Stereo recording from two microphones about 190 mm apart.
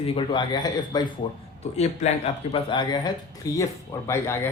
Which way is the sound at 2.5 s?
25° left (ahead or behind).